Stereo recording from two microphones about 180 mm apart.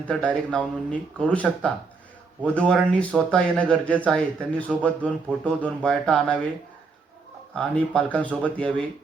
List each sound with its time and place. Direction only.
0.1 s speech: 5° left (ahead or behind)
7.5 s speech: 5° left (ahead or behind)